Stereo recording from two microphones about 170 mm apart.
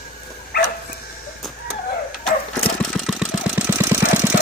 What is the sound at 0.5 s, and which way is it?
Dog, 70° left (ahead or behind).